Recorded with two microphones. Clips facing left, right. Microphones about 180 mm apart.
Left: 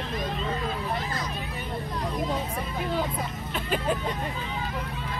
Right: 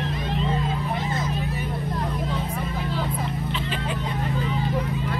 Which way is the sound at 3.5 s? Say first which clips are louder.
Left 1 dB; 45° left (ahead or behind).